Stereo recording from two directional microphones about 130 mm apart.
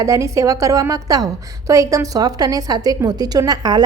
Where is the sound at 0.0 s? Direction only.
25° right (ahead or behind).